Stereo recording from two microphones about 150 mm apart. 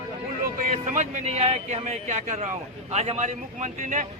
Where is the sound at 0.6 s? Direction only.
60° right (ahead or behind).